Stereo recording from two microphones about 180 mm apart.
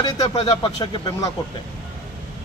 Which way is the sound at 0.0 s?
20° left (ahead or behind).